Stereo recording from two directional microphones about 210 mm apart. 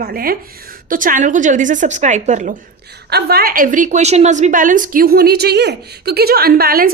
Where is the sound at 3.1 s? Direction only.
50° right (ahead or behind).